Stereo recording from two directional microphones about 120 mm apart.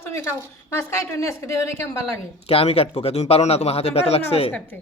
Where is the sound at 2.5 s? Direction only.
55° left (ahead or behind).